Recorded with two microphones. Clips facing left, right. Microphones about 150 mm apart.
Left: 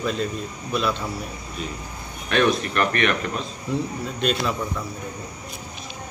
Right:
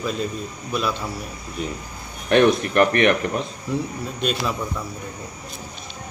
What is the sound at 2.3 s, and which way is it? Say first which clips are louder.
Speech: right 5 dB; 20° right (ahead or behind).